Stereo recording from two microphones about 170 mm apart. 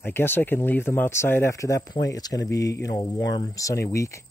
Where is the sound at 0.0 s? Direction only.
15° left (ahead or behind).